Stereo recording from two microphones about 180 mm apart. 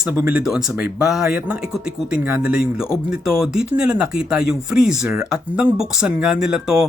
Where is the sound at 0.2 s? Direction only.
10° right (ahead or behind).